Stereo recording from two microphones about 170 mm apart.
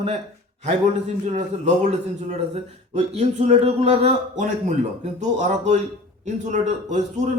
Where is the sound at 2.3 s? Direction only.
40° right (ahead or behind).